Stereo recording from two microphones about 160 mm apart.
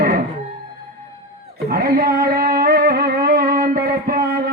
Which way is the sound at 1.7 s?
70° right (ahead or behind).